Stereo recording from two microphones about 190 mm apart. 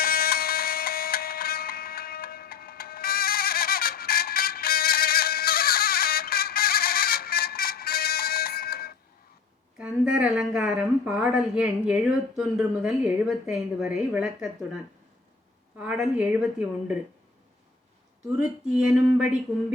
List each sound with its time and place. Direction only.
0.0 s music: 50° left (ahead or behind)
9.7 s a woman's voice: 5° right (ahead or behind)
15.8 s a woman's voice: 5° right (ahead or behind)
18.7 s a sound: 5° right (ahead or behind)